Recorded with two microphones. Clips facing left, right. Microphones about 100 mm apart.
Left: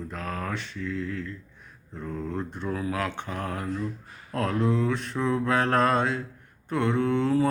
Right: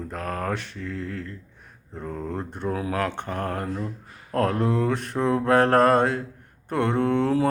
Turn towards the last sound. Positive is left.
turn(degrees=-55)  # may be behind; listen again after turning